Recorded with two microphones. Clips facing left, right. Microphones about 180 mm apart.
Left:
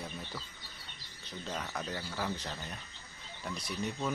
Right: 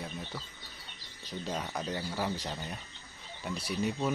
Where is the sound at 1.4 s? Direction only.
15° right (ahead or behind).